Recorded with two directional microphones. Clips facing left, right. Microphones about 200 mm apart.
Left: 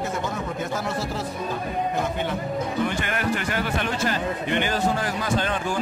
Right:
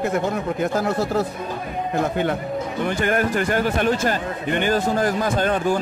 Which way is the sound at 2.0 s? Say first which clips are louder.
Right 5 dB; 60° right (ahead or behind).